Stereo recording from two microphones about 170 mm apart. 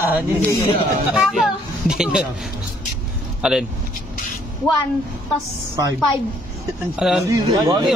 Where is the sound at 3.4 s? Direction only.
5° right (ahead or behind).